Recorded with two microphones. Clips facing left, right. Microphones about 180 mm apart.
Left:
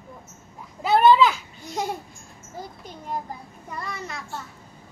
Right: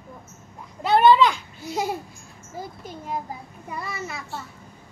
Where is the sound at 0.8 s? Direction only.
5° left (ahead or behind).